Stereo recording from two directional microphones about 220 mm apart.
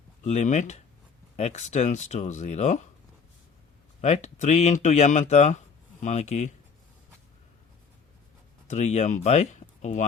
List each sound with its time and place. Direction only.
0.3 s speech: 30° left (ahead or behind)
4.0 s speech: 30° left (ahead or behind)
8.6 s speech: 30° left (ahead or behind)